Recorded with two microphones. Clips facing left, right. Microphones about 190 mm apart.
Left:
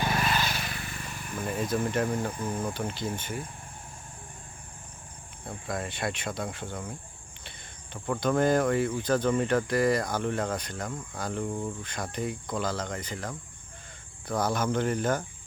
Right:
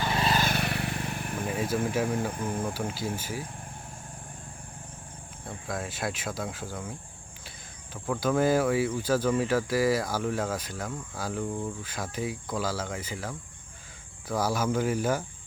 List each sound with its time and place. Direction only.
0.1 s vehicle: 25° right (ahead or behind)
0.3 s vehicle: 50° right (ahead or behind)
1.5 s speech: 5° right (ahead or behind)
5.5 s speech: centre (ahead or behind)
8.0 s speech: centre (ahead or behind)